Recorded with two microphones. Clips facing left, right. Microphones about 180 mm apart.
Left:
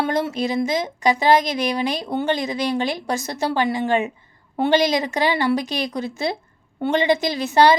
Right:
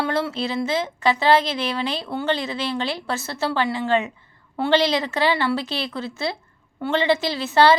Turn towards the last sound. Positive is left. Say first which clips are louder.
# left 1 dB
turn(degrees=15)  # may be behind; listen again after turning